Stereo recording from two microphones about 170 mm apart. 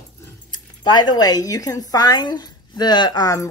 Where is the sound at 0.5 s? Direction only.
25° left (ahead or behind).